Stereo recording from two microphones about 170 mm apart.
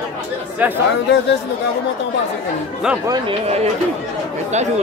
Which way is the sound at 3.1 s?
35° right (ahead or behind).